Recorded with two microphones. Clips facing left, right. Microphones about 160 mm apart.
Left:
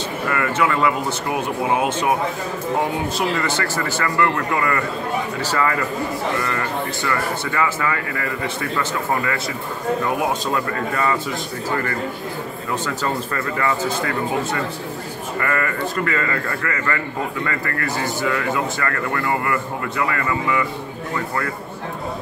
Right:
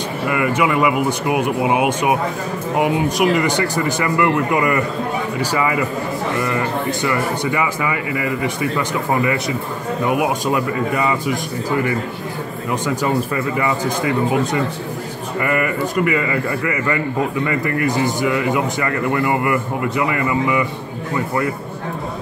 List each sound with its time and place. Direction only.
0.3 s speech: 15° right (ahead or behind)